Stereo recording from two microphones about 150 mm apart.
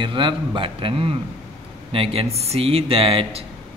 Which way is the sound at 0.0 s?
30° right (ahead or behind).